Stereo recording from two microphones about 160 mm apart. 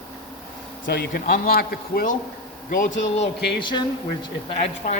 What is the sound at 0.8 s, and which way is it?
A man's voice, 70° left (ahead or behind).